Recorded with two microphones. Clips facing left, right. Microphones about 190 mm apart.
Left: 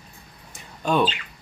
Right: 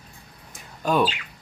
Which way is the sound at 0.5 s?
5° right (ahead or behind).